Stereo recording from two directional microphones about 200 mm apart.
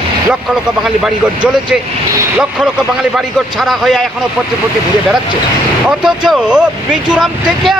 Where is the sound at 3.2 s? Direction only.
Centre (ahead or behind).